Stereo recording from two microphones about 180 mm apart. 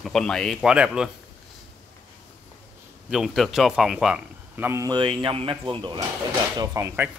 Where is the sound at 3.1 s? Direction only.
Centre (ahead or behind); by 7.1 s 15° right (ahead or behind).